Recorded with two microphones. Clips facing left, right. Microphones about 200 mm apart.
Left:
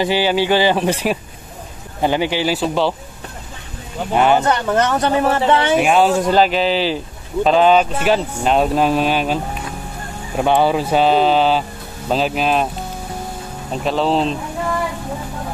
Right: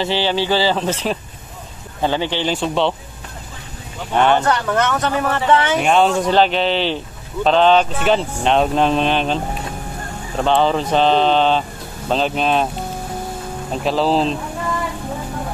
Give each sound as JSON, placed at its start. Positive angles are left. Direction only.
{"t": 0.0, "sound": "speech", "side_deg": 10}
{"t": 4.1, "sound": "speech", "side_deg": 5}
{"t": 4.5, "sound": "speech", "side_deg": 25}
{"t": 5.8, "sound": "speech", "side_deg": 5}
{"t": 13.8, "sound": "speech", "side_deg": 0}